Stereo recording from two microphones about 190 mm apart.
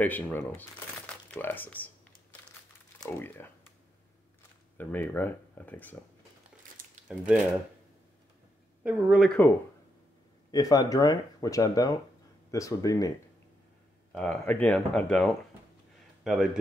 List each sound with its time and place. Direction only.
0.0 s speech: 10° left (ahead or behind)
3.1 s speech: 10° left (ahead or behind)
4.7 s speech: 10° left (ahead or behind)
6.8 s a sound: 45° right (ahead or behind)
8.8 s speech: 5° right (ahead or behind)
10.5 s speech: 20° left (ahead or behind)
14.1 s speech: 5° left (ahead or behind)